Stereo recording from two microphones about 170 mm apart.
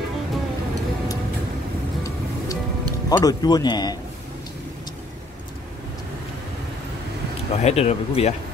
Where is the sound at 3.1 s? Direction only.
25° left (ahead or behind).